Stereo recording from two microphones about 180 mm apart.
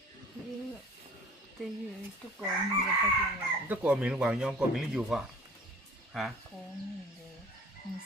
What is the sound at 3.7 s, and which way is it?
Speech, 10° right (ahead or behind).